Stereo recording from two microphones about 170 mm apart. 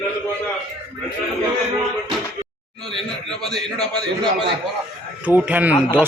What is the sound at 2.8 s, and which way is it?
A man's voice, 5° left (ahead or behind).